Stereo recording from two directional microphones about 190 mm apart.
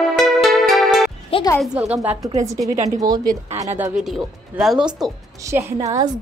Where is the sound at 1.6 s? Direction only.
5° right (ahead or behind); by 3.3 s 20° right (ahead or behind).